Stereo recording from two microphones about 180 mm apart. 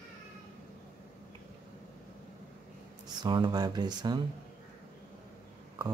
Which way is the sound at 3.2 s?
25° right (ahead or behind).